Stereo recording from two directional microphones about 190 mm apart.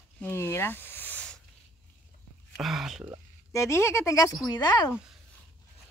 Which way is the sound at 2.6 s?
Centre (ahead or behind).